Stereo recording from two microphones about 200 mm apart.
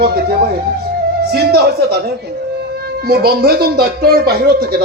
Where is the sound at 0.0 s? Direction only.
50° right (ahead or behind).